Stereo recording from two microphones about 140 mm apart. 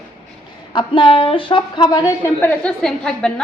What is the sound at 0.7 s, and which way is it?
A woman's voice, 35° left (ahead or behind).